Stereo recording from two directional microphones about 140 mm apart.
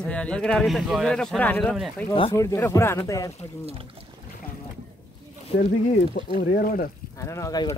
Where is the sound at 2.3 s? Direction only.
20° left (ahead or behind).